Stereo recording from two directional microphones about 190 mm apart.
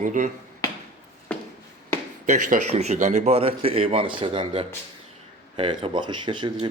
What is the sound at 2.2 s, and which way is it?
A man's voice, 40° right (ahead or behind).